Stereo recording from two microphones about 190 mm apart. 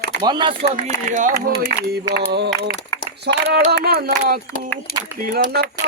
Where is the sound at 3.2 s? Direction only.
60° right (ahead or behind).